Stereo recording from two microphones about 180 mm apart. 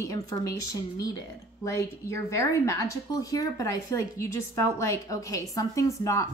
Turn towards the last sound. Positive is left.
turn(degrees=15)  # may be behind; listen again after turning